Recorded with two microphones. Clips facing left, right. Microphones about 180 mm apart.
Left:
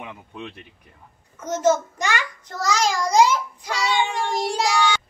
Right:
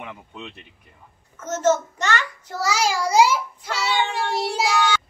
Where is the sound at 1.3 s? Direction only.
10° left (ahead or behind).